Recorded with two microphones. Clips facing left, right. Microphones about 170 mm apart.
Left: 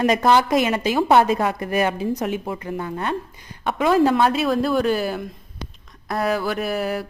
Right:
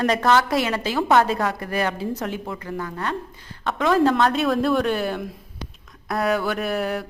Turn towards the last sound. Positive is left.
turn(degrees=0)  # may be behind; listen again after turning